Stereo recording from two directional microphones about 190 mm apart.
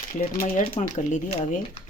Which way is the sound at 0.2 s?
45° left (ahead or behind).